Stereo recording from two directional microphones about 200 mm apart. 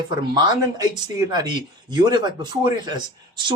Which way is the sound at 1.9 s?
20° right (ahead or behind).